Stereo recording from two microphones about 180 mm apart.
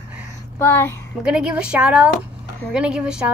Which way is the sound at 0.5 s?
15° left (ahead or behind).